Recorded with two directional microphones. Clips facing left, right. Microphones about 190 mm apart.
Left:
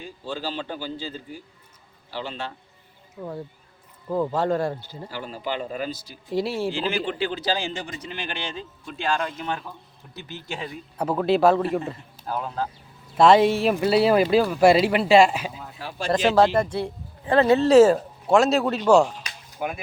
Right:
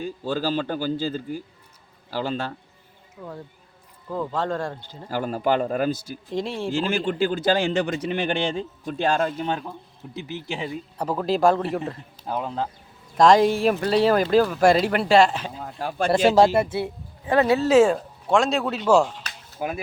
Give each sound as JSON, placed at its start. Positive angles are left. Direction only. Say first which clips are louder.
{"t": 0.0, "sound": "a man's voice", "louder": "right 6 dB", "side_deg": -45}
{"t": 4.1, "sound": "speech", "louder": "left 3 dB", "side_deg": 10}
{"t": 5.1, "sound": "a man's voice", "louder": "right 8 dB", "side_deg": -50}
{"t": 6.2, "sound": "speech", "louder": "left 3 dB", "side_deg": 5}
{"t": 6.7, "sound": "a man's voice", "louder": "right 2 dB", "side_deg": -45}
{"t": 8.9, "sound": "speech", "louder": "right 4 dB", "side_deg": -40}
{"t": 9.5, "sound": "speech", "louder": "right 3 dB", "side_deg": -25}
{"t": 11.1, "sound": "speech", "louder": "left 1 dB", "side_deg": 0}
{"t": 12.2, "sound": "speech", "louder": "right 1 dB", "side_deg": -20}
{"t": 13.1, "sound": "speech", "louder": "even", "side_deg": 5}
{"t": 15.5, "sound": "speech", "louder": "right 6 dB", "side_deg": -45}
{"t": 16.1, "sound": "speech", "louder": "right 1 dB", "side_deg": -10}
{"t": 17.5, "sound": "speech", "louder": "left 3 dB", "side_deg": 0}
{"t": 19.5, "sound": "speech", "louder": "right 1 dB", "side_deg": -35}